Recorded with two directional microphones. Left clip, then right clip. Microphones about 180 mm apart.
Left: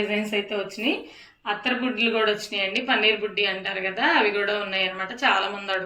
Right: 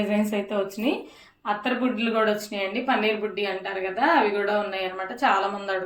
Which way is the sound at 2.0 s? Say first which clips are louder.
Left 3 dB; 55° right (ahead or behind).